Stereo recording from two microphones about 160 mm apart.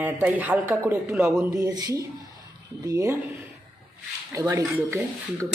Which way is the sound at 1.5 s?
25° right (ahead or behind).